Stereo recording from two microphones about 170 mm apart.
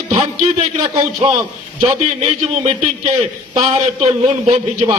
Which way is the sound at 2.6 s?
40° right (ahead or behind).